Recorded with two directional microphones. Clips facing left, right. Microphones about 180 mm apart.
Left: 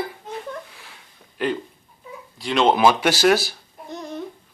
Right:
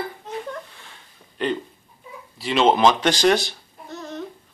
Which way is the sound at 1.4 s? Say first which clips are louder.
Even; 5° left (ahead or behind).